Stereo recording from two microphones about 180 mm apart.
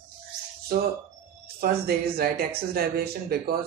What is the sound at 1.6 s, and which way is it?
Speech, 55° right (ahead or behind).